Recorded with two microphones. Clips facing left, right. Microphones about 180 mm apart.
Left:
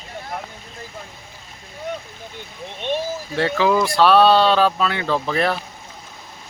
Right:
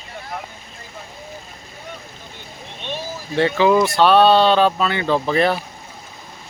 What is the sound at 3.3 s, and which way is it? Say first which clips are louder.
Speech: right 3 dB; centre (ahead or behind).